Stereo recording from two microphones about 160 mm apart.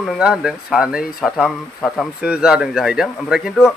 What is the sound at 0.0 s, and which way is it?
A man's voice, centre (ahead or behind).